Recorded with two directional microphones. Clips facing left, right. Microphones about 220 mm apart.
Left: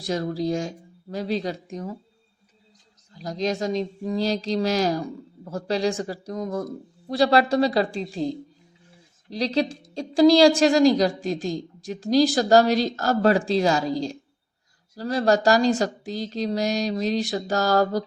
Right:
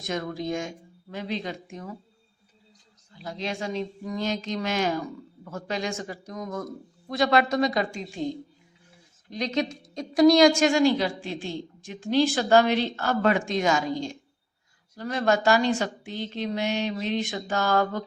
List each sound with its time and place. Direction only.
0.0 s a woman's voice: 35° left (ahead or behind)
3.1 s a woman's voice: 40° left (ahead or behind)